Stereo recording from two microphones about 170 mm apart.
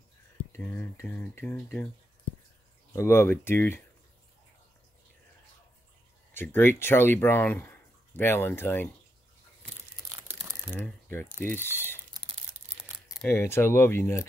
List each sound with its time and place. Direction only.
0.5 s speech: 10° left (ahead or behind)
2.9 s speech: 15° left (ahead or behind)
6.3 s speech: 10° left (ahead or behind)
10.1 s crumpling: 10° right (ahead or behind)
10.7 s speech: 10° left (ahead or behind)
12.3 s crumpling: 45° right (ahead or behind)
13.3 s speech: 15° left (ahead or behind)